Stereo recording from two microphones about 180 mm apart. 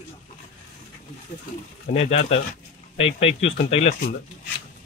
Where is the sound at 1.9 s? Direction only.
35° left (ahead or behind).